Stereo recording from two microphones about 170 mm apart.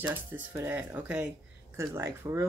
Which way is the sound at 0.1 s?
10° right (ahead or behind).